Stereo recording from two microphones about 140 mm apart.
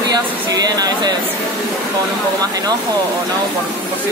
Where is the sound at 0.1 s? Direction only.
25° right (ahead or behind).